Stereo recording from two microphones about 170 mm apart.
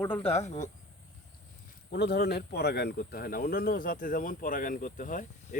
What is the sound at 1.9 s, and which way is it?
Speech, 70° left (ahead or behind).